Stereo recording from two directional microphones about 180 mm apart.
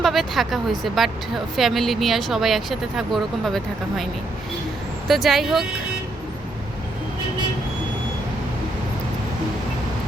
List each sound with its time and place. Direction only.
0.0 s speech: centre (ahead or behind)
5.0 s speech: centre (ahead or behind)